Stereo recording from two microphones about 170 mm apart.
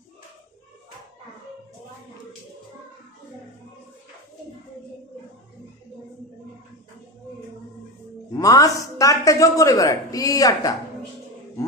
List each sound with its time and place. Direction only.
8.4 s a man's voice: 20° left (ahead or behind)